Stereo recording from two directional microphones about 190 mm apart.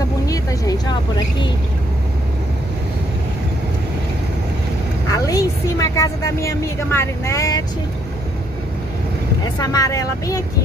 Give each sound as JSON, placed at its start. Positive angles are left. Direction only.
{"t": 0.3, "sound": "vehicle", "side_deg": 20}
{"t": 5.1, "sound": "a woman's voice", "side_deg": 20}
{"t": 9.4, "sound": "speech", "side_deg": 20}